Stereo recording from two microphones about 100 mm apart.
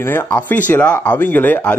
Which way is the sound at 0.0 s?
25° left (ahead or behind).